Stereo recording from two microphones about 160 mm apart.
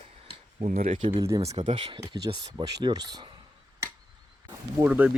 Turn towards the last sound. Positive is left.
turn(degrees=-10)  # may be behind; listen again after turning